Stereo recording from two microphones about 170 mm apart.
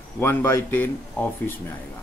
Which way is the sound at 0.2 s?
15° left (ahead or behind).